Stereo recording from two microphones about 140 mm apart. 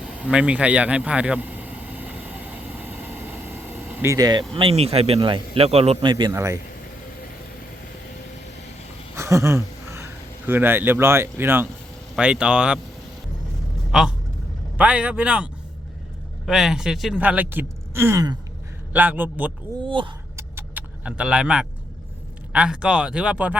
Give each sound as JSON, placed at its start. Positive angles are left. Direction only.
{"t": 0.0, "sound": "vehicle", "side_deg": -10}
{"t": 4.5, "sound": "a man's voice", "side_deg": -45}
{"t": 6.3, "sound": "speech", "side_deg": -20}
{"t": 9.1, "sound": "speech", "side_deg": -20}
{"t": 13.9, "sound": "speech", "side_deg": -5}
{"t": 16.5, "sound": "speech", "side_deg": -5}
{"t": 18.9, "sound": "speech", "side_deg": -10}
{"t": 19.8, "sound": "speech", "side_deg": -35}
{"t": 20.3, "sound": "vehicle", "side_deg": -15}
{"t": 22.5, "sound": "speech", "side_deg": -5}